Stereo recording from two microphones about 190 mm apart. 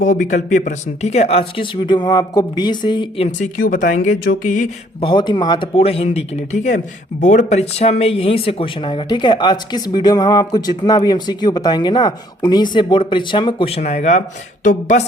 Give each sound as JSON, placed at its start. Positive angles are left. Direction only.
{"t": 0.0, "sound": "speech", "side_deg": 45}
{"t": 3.3, "sound": "speech", "side_deg": 45}
{"t": 4.9, "sound": "speech", "side_deg": 25}